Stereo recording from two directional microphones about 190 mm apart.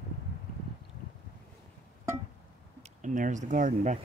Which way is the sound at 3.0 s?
40° right (ahead or behind).